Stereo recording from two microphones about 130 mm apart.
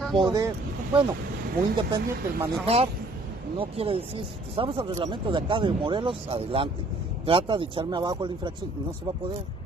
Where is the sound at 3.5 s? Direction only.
45° right (ahead or behind).